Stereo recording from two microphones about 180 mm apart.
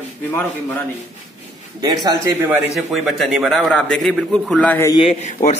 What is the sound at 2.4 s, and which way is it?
A man's voice, 5° right (ahead or behind).